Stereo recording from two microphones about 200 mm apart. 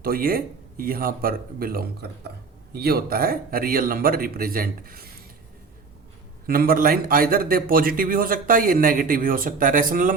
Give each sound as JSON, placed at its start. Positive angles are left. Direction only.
{"t": 0.0, "sound": "a man's voice", "side_deg": -45}
{"t": 6.5, "sound": "a man's voice", "side_deg": -45}